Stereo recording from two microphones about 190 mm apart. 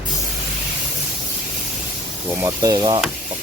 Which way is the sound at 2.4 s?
20° right (ahead or behind).